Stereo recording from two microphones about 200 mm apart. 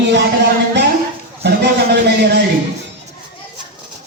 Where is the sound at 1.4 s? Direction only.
55° right (ahead or behind).